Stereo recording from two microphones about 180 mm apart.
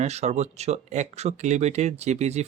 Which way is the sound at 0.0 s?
35° right (ahead or behind).